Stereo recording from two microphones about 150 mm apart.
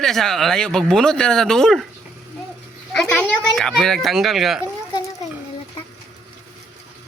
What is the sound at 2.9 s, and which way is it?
Speech, 10° left (ahead or behind).